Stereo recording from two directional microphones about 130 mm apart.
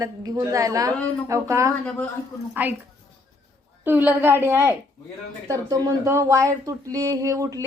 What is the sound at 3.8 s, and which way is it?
A woman's voice, 15° right (ahead or behind).